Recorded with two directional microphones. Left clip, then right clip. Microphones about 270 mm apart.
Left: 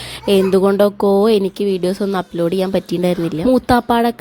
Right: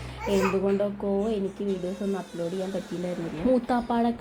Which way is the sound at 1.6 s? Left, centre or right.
Left.